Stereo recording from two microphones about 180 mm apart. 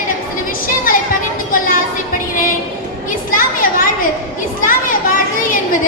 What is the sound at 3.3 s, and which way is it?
Children playing, 50° left (ahead or behind).